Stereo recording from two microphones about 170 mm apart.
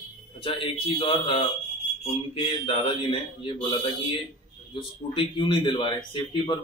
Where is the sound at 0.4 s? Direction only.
30° left (ahead or behind).